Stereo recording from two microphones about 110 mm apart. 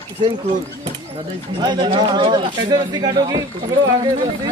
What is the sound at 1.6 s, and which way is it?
Speech, 40° right (ahead or behind).